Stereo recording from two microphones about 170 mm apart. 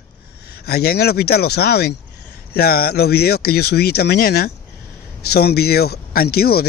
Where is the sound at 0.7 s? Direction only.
65° left (ahead or behind).